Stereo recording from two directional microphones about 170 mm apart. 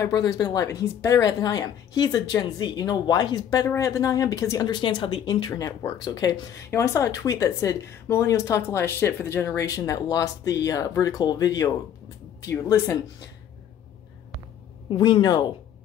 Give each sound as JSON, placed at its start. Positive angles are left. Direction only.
{"t": 0.0, "sound": "speech", "side_deg": 20}
{"t": 14.9, "sound": "speech", "side_deg": 25}